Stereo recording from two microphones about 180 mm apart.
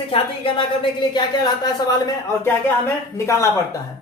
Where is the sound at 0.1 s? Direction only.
30° left (ahead or behind).